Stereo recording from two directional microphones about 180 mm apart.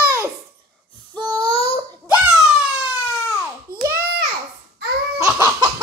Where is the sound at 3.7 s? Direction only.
55° right (ahead or behind).